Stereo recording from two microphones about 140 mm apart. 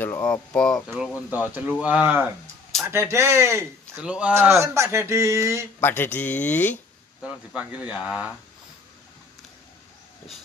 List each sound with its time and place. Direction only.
0.0 s speech: 10° left (ahead or behind)
1.3 s speech: 15° right (ahead or behind)
4.0 s speech: 10° right (ahead or behind)
5.8 s speech: 15° left (ahead or behind)
7.2 s speech: 10° right (ahead or behind)